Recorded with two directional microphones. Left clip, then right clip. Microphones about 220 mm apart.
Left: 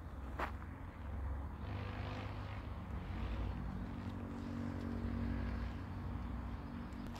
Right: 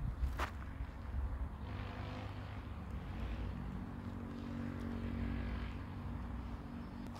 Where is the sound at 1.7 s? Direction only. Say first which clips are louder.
Left 1 dB; 10° right (ahead or behind).